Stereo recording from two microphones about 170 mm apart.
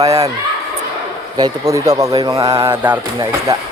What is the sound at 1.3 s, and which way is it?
Speech, 20° right (ahead or behind).